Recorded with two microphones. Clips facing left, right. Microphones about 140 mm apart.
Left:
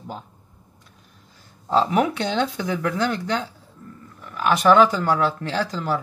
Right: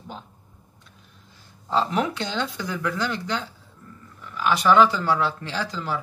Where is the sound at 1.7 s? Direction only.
55° left (ahead or behind).